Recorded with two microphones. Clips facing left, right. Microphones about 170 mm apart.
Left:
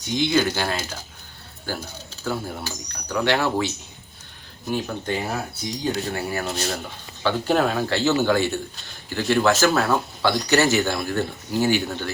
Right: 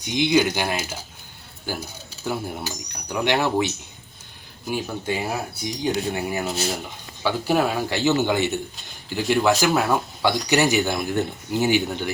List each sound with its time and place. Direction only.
0.0 s speech: 15° right (ahead or behind)